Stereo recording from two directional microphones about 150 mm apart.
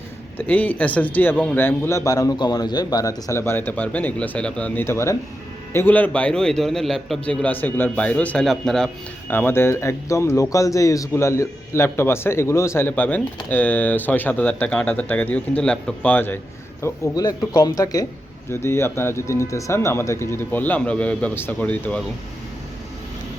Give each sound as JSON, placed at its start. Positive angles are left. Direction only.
{"t": 0.3, "sound": "speech", "side_deg": 10}
{"t": 9.3, "sound": "speech", "side_deg": 15}
{"t": 16.8, "sound": "speech", "side_deg": 25}